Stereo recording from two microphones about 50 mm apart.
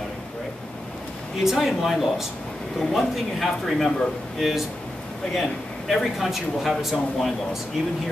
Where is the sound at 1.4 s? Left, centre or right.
Centre.